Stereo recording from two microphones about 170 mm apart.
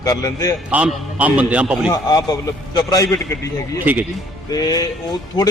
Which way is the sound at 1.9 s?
20° left (ahead or behind).